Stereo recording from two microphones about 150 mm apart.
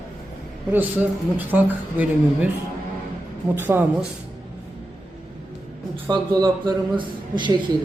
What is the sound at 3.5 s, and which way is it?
Speech, 15° right (ahead or behind).